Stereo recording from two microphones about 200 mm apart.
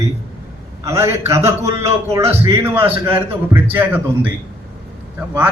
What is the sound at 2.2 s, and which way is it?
Speech, 30° right (ahead or behind).